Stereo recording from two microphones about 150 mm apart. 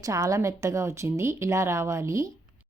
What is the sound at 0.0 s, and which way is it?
A woman's voice, 20° right (ahead or behind).